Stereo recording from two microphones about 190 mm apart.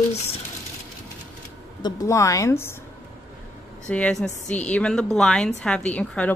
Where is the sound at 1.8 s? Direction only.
20° left (ahead or behind).